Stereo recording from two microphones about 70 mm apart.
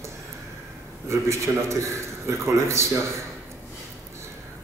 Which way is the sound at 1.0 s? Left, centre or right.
Right.